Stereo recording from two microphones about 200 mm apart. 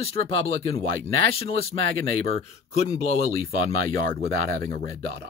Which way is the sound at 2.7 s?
35° left (ahead or behind).